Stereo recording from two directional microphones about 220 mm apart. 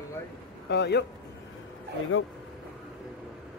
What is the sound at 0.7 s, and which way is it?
Speech, 50° left (ahead or behind).